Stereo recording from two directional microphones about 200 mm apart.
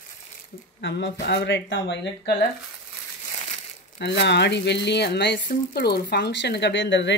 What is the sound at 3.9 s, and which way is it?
Speech, 60° left (ahead or behind).